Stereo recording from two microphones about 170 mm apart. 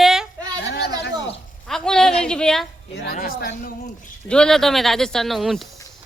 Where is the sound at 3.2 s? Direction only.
60° left (ahead or behind).